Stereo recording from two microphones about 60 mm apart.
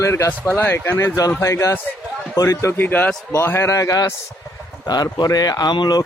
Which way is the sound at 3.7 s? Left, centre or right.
Left.